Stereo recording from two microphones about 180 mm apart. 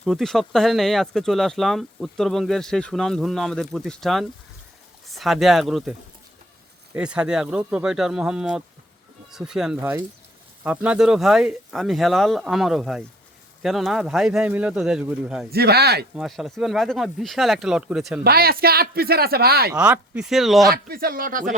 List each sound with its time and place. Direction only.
0.0 s speech: centre (ahead or behind)
6.9 s speech: 5° right (ahead or behind)
15.4 s speech: 60° right (ahead or behind)
16.1 s speech: centre (ahead or behind)
18.2 s speech: 60° right (ahead or behind)
19.8 s speech: 5° right (ahead or behind)
20.7 s speech: 55° right (ahead or behind)